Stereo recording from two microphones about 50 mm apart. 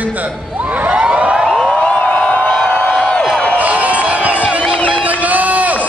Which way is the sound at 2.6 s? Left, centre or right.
Left.